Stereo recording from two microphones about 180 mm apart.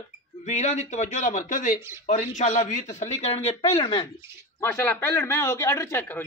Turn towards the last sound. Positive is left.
turn(degrees=10)  # may be behind; listen again after turning